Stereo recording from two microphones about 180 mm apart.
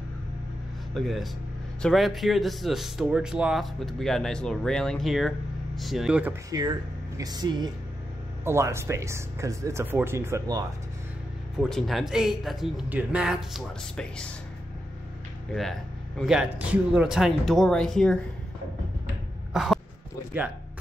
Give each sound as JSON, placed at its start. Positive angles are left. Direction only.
{"t": 0.9, "sound": "speech", "side_deg": 0}
{"t": 6.5, "sound": "speech", "side_deg": -20}
{"t": 11.5, "sound": "speech", "side_deg": 0}
{"t": 15.5, "sound": "speech", "side_deg": 0}
{"t": 19.5, "sound": "throat clearing", "side_deg": 0}